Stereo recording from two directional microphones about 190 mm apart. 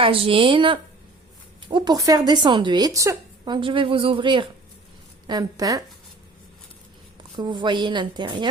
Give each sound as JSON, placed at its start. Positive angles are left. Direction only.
{"t": 0.0, "sound": "speech", "side_deg": -30}
{"t": 7.3, "sound": "speech", "side_deg": -25}